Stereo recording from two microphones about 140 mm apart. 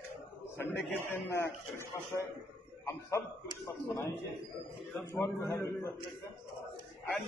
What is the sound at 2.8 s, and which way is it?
Speech, 20° left (ahead or behind).